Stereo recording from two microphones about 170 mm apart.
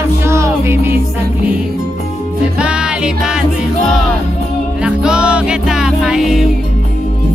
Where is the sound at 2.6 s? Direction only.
5° right (ahead or behind).